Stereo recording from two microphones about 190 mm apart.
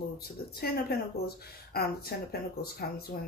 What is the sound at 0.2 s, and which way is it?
Speech, 55° left (ahead or behind).